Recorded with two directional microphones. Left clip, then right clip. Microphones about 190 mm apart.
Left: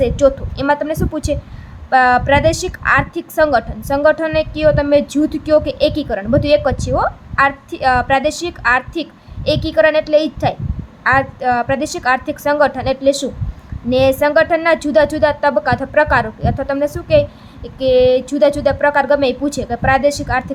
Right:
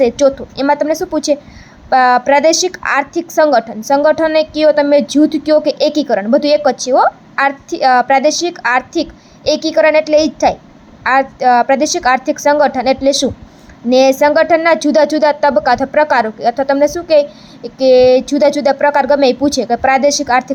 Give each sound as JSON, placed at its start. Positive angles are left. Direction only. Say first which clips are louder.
{"t": 0.0, "sound": "a woman's voice", "louder": "right 2 dB", "side_deg": -20}